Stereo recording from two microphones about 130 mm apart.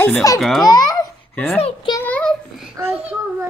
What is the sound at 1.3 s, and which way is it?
Speech, 15° left (ahead or behind).